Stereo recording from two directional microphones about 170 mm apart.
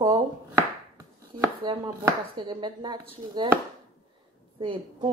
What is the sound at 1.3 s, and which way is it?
Chopping, 30° right (ahead or behind).